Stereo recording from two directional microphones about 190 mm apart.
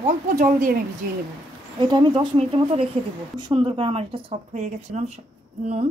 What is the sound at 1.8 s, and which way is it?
A woman's voice, 25° right (ahead or behind).